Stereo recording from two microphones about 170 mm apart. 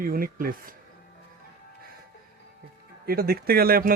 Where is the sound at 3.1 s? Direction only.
60° right (ahead or behind).